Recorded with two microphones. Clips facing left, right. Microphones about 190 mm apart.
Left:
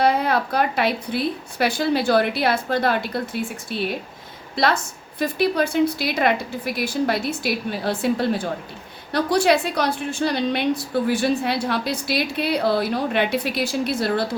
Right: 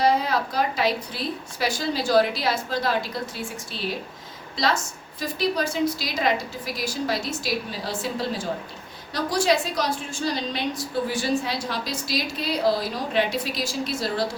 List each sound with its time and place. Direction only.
0.0 s a woman's voice: 60° left (ahead or behind)